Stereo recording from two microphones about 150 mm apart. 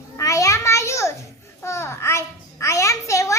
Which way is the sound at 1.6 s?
20° left (ahead or behind).